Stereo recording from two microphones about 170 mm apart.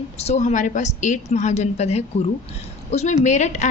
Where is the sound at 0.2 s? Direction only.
40° left (ahead or behind).